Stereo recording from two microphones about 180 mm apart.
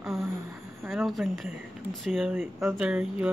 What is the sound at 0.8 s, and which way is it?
Speech, 5° right (ahead or behind).